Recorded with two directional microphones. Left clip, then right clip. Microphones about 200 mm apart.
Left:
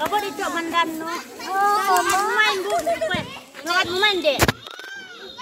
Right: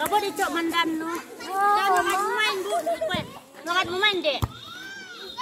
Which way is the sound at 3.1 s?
50° left (ahead or behind).